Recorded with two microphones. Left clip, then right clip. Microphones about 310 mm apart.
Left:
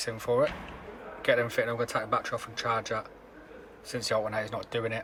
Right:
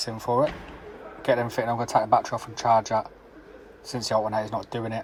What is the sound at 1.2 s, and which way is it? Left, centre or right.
Speech, centre.